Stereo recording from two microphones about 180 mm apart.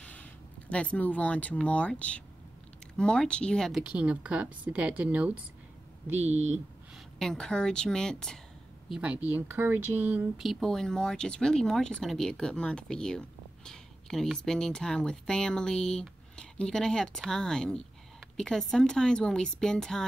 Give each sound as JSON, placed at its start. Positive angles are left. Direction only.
{"t": 0.0, "sound": "speech", "side_deg": 5}
{"t": 6.1, "sound": "speech", "side_deg": -40}
{"t": 7.2, "sound": "speech", "side_deg": 5}